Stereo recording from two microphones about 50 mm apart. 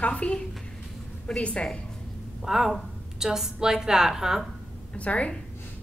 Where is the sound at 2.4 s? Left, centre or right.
Centre.